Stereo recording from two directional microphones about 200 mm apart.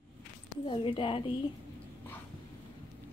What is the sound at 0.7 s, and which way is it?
Speech, 25° left (ahead or behind).